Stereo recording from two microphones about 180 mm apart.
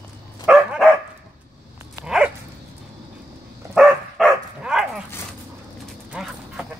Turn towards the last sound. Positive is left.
turn(degrees=0)  # may be behind; listen again after turning